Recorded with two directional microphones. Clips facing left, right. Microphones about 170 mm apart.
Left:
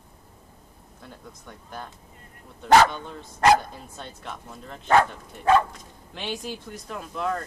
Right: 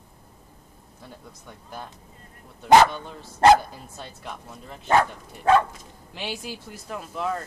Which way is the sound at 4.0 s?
5° right (ahead or behind).